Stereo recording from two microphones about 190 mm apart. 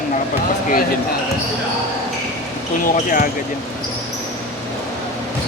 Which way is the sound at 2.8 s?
45° left (ahead or behind).